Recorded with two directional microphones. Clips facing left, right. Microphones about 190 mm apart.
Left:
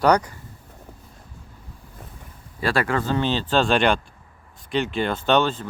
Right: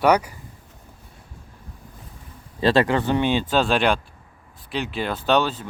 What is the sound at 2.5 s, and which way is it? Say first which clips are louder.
Speech: right 4 dB; 20° right (ahead or behind).